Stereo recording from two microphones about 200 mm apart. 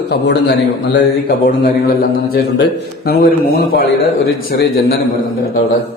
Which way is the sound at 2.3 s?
50° left (ahead or behind).